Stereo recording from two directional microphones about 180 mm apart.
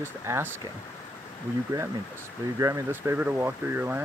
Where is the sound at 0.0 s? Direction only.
10° right (ahead or behind).